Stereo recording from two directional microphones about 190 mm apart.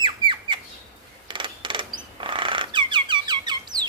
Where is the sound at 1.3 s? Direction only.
25° right (ahead or behind).